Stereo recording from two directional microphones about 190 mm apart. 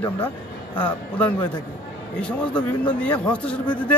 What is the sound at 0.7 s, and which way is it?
Speech, 10° left (ahead or behind).